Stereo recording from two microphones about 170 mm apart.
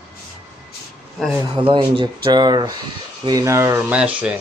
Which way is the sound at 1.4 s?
30° right (ahead or behind).